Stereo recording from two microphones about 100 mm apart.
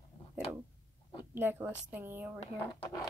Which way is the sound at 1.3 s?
20° right (ahead or behind).